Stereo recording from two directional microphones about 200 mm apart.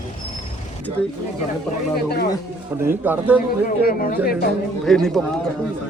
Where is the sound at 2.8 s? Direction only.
10° right (ahead or behind).